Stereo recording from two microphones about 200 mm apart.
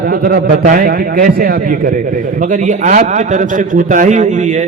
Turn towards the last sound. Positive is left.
turn(degrees=-35)  # may be behind; listen again after turning